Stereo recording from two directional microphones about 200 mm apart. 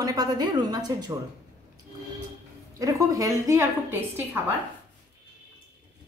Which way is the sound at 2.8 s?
15° right (ahead or behind).